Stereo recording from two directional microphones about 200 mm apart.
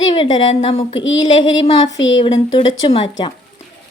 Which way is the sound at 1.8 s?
65° left (ahead or behind).